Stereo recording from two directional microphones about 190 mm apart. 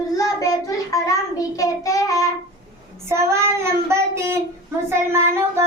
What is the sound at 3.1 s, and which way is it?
Child singing, 15° right (ahead or behind).